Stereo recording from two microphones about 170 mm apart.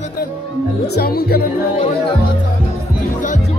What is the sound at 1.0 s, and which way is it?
Speech, 65° left (ahead or behind).